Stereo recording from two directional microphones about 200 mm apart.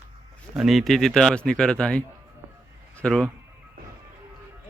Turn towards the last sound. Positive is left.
turn(degrees=5)  # may be behind; listen again after turning